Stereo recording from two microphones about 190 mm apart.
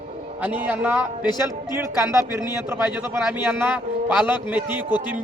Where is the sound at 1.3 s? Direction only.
20° left (ahead or behind).